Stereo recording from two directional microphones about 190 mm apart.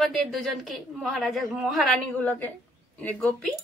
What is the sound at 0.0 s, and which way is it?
A woman's voice, centre (ahead or behind).